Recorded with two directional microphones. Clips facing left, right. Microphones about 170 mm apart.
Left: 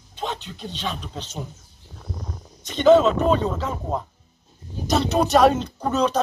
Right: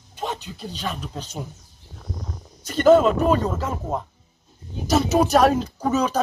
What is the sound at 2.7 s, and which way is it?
Speech, 5° right (ahead or behind).